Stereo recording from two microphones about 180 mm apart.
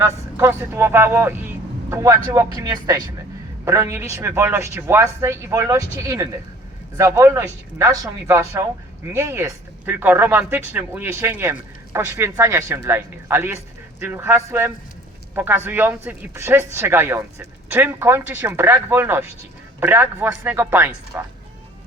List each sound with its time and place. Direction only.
0.0 s speech: 15° right (ahead or behind)